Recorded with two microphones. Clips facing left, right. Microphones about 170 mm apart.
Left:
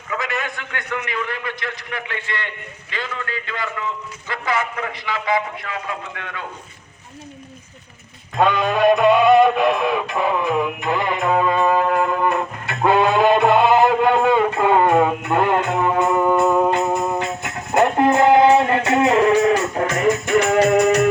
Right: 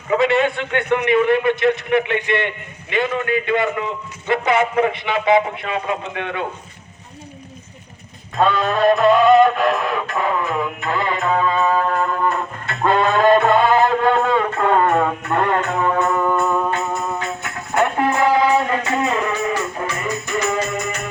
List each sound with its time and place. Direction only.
0.1 s a man's voice: 25° right (ahead or behind)
8.4 s music: 10° left (ahead or behind)
18.1 s music: 50° left (ahead or behind)
19.5 s music: 65° left (ahead or behind)